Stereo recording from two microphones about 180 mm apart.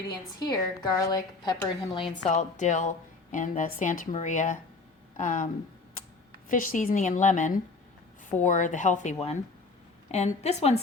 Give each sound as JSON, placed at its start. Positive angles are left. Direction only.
{"t": 0.3, "sound": "a woman's voice", "side_deg": 20}
{"t": 2.3, "sound": "a woman's voice", "side_deg": 40}
{"t": 6.5, "sound": "a woman's voice", "side_deg": 50}